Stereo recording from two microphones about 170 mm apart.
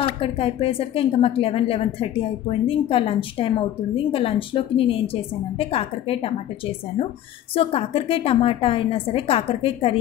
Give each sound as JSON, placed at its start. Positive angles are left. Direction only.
{"t": 0.0, "sound": "speech", "side_deg": 35}